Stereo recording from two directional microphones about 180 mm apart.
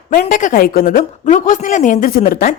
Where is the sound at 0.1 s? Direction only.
50° left (ahead or behind).